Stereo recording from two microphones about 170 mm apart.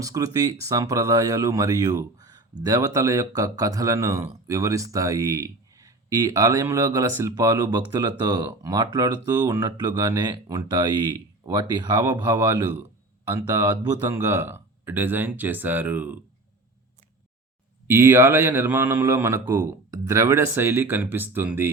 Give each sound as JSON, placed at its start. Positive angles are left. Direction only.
{"t": 0.0, "sound": "speech", "side_deg": -20}
{"t": 17.8, "sound": "speech", "side_deg": -15}